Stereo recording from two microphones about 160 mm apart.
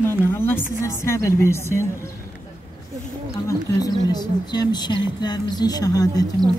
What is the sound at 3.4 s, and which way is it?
Speech, 25° left (ahead or behind).